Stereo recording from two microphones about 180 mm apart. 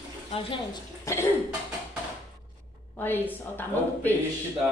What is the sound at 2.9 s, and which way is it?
A woman's voice, 10° left (ahead or behind).